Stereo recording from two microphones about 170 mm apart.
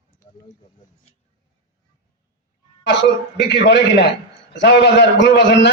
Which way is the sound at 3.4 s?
90° left.